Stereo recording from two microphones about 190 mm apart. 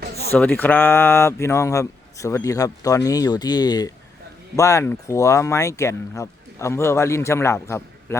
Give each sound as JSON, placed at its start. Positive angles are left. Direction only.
{"t": 0.3, "sound": "speech", "side_deg": 10}